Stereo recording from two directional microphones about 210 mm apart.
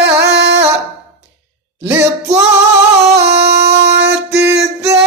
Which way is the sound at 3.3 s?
50° right (ahead or behind).